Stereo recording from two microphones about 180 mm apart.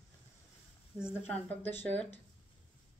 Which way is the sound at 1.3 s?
10° left (ahead or behind).